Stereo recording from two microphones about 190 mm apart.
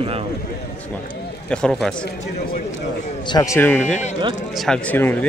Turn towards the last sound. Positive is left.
turn(degrees=10)  # may be behind; listen again after turning